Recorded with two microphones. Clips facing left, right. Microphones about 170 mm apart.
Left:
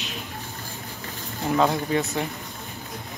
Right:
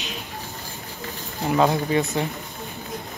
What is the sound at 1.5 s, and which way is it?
Speech, 5° right (ahead or behind).